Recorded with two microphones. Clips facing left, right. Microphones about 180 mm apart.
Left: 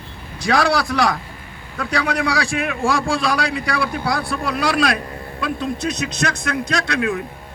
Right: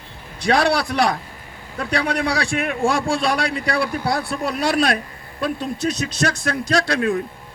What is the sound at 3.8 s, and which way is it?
Speech, 35° right (ahead or behind).